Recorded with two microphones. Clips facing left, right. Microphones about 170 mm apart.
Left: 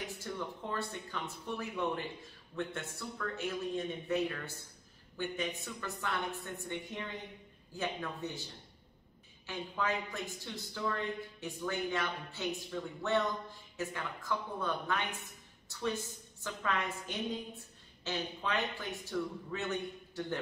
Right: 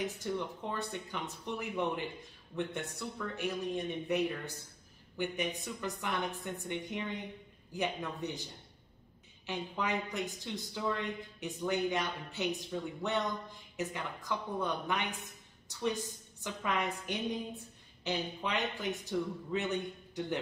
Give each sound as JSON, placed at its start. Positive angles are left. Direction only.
{"t": 0.2, "sound": "a woman's voice", "side_deg": -15}
{"t": 9.5, "sound": "a woman's voice", "side_deg": -20}